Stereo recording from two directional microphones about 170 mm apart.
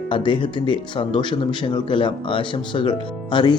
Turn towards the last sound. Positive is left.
turn(degrees=30)  # may be behind; listen again after turning